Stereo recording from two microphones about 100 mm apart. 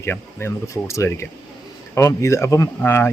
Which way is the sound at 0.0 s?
25° left (ahead or behind).